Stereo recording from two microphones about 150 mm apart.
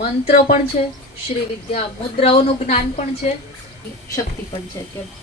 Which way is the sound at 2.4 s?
50° left (ahead or behind).